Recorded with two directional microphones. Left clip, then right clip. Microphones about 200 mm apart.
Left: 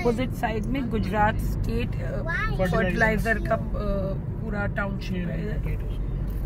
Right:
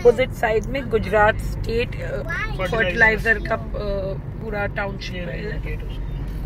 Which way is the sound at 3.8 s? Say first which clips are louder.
Right 4 dB; centre (ahead or behind).